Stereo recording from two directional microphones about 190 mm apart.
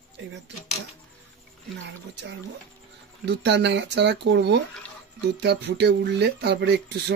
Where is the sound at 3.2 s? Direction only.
65° right (ahead or behind).